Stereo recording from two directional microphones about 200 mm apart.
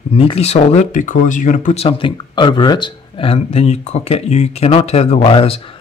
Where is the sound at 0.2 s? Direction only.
30° left (ahead or behind).